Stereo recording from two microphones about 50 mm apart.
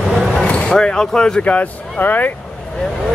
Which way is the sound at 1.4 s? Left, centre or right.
Left.